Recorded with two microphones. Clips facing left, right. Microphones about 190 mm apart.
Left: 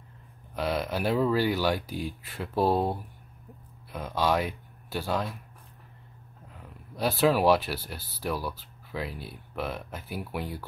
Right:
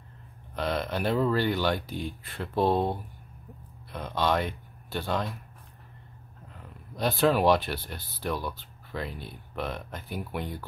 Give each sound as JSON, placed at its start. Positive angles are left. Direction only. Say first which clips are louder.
{"t": 0.6, "sound": "speech", "louder": "even", "side_deg": 5}
{"t": 6.5, "sound": "speech", "louder": "even", "side_deg": 5}